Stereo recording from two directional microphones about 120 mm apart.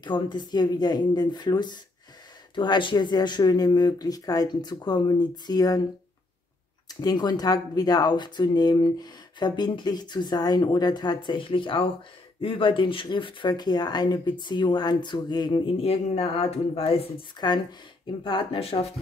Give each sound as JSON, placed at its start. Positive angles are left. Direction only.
{"t": 0.0, "sound": "speech", "side_deg": 40}
{"t": 6.9, "sound": "speech", "side_deg": 30}
{"t": 15.8, "sound": "speech", "side_deg": 60}
{"t": 17.4, "sound": "speech", "side_deg": 35}